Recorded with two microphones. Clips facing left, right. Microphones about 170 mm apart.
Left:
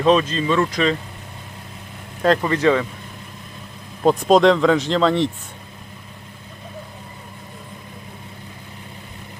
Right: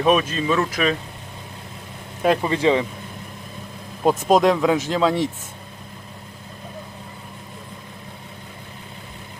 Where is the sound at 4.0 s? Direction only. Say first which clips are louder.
Left 3 dB; centre (ahead or behind).